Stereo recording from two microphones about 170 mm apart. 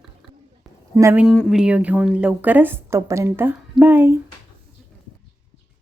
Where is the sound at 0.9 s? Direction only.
15° right (ahead or behind).